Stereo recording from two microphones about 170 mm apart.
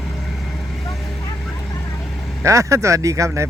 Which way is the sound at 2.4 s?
15° right (ahead or behind).